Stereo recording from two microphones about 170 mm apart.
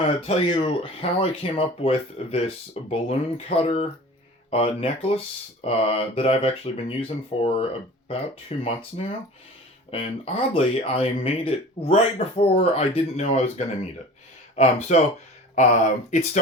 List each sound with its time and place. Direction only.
0.2 s speech: 35° left (ahead or behind)